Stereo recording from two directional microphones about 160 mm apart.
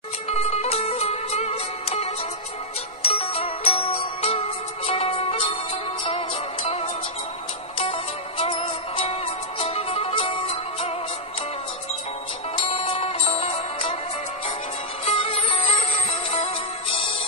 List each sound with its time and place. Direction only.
0.3 s music: 40° left (ahead or behind)
12.6 s music: 35° left (ahead or behind)
15.0 s music: 40° left (ahead or behind)